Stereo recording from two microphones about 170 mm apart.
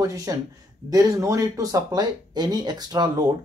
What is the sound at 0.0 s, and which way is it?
A man's voice, 20° right (ahead or behind).